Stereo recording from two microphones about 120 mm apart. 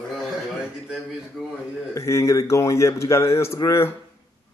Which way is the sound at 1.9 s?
25° left (ahead or behind).